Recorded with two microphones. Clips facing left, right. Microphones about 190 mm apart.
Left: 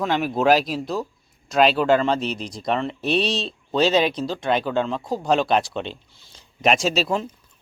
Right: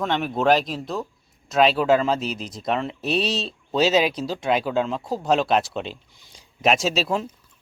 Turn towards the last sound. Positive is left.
turn(degrees=-5)  # may be behind; listen again after turning